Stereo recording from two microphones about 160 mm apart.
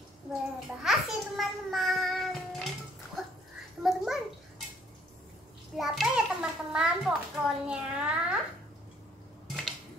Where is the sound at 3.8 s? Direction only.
Centre (ahead or behind).